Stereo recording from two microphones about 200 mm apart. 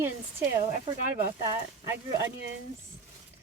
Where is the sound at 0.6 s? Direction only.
30° right (ahead or behind).